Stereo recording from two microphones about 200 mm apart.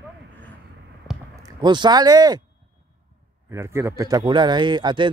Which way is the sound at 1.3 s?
20° right (ahead or behind).